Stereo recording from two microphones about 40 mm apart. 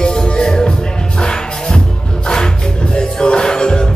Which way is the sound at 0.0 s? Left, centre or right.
Centre.